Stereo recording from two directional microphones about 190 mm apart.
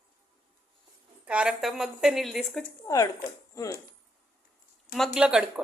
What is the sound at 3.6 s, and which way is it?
Speech, 15° left (ahead or behind).